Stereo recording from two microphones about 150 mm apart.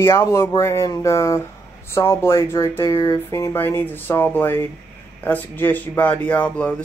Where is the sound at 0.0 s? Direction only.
20° left (ahead or behind).